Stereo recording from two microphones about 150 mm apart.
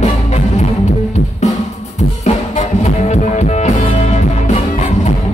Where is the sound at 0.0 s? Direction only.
50° left (ahead or behind).